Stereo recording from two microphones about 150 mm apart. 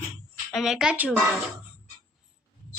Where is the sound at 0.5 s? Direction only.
5° right (ahead or behind).